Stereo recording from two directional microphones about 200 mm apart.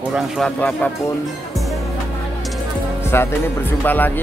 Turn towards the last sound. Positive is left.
turn(degrees=10)  # may be behind; listen again after turning